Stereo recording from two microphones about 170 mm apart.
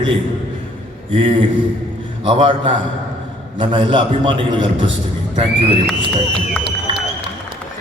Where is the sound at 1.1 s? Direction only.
30° right (ahead or behind).